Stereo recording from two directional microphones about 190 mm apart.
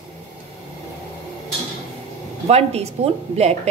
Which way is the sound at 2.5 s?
35° right (ahead or behind).